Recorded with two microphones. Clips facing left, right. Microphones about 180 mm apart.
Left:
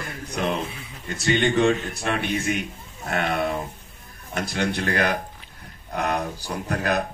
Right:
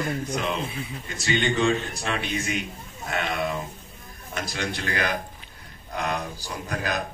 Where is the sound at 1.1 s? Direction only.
60° left (ahead or behind).